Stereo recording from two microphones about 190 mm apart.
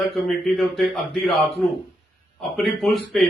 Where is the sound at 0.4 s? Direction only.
Centre (ahead or behind).